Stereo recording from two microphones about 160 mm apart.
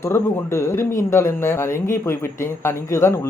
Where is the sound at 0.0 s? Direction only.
15° left (ahead or behind).